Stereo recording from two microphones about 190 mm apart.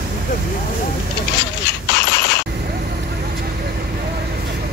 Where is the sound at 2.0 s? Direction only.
65° left (ahead or behind).